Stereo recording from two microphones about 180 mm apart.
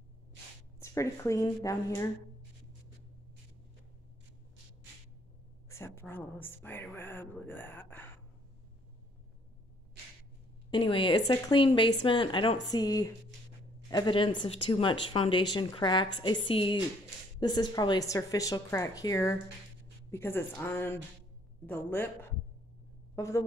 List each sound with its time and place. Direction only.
0.7 s speech: 15° left (ahead or behind)
5.7 s speech: 15° left (ahead or behind)
10.7 s speech: 25° left (ahead or behind); by 22.1 s 10° left (ahead or behind)
23.1 s a woman's voice: 15° left (ahead or behind)